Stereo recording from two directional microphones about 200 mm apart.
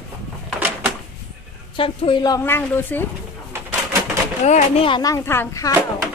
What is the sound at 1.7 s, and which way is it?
A woman's voice, 25° left (ahead or behind).